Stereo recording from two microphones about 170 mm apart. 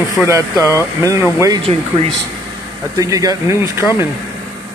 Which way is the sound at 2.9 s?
20° right (ahead or behind).